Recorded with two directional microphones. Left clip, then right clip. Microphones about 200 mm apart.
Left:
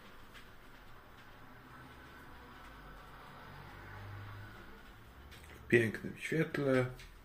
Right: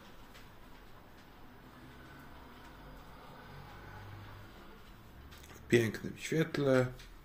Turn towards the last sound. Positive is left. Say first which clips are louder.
# right 2 dB
turn(degrees=-15)  # may be behind; listen again after turning